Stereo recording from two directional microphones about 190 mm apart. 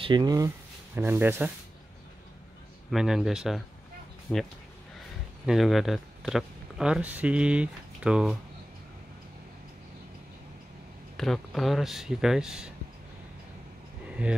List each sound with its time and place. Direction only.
0.0 s speech: 20° right (ahead or behind)
2.9 s speech: centre (ahead or behind)
5.5 s speech: centre (ahead or behind)
11.1 s speech: centre (ahead or behind)